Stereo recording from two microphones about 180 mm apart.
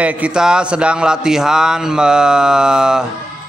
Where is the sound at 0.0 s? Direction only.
5° right (ahead or behind).